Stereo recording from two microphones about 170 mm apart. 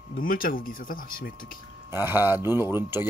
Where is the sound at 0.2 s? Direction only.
55° left (ahead or behind).